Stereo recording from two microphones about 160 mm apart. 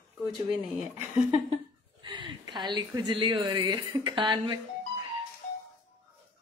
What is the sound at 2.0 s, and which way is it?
A woman's voice, 30° right (ahead or behind).